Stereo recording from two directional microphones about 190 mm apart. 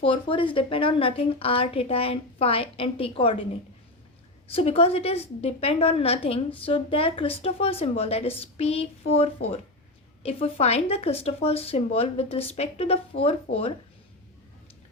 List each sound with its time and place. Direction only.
0.0 s a woman's voice: 25° left (ahead or behind)
4.4 s a woman's voice: 30° left (ahead or behind)